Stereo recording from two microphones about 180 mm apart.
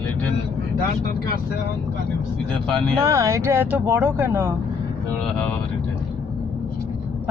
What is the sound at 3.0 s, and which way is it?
Speech, 15° right (ahead or behind).